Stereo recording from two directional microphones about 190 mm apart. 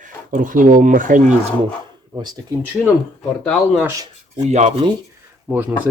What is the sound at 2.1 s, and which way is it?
Speech, 20° right (ahead or behind).